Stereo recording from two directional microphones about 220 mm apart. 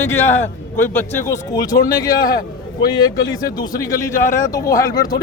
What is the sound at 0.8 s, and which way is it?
Speech, 10° left (ahead or behind).